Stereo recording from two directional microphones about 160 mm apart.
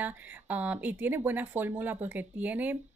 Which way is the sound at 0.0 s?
10° right (ahead or behind).